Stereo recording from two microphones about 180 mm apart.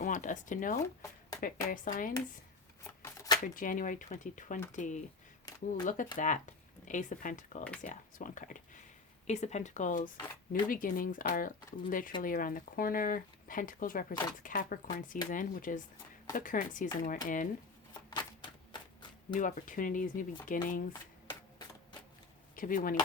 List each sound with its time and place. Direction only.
0.0 s speech: 45° left (ahead or behind)
2.8 s shuffling cards: 15° left (ahead or behind)
3.4 s speech: 50° left (ahead or behind)
17.9 s shuffling cards: 25° left (ahead or behind)
19.3 s speech: 45° left (ahead or behind)
22.5 s speech: 50° left (ahead or behind)